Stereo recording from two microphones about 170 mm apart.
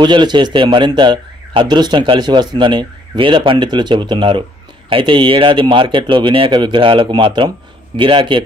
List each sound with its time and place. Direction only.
0.0 s speech: 25° right (ahead or behind)